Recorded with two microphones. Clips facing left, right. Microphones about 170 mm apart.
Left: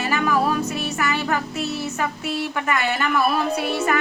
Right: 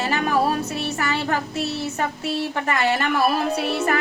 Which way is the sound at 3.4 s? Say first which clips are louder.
Even; centre (ahead or behind).